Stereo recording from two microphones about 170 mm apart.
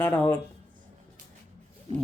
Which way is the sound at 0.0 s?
10° left (ahead or behind).